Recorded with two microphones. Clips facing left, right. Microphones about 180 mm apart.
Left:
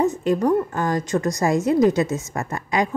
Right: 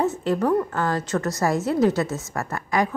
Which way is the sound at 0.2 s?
15° left (ahead or behind).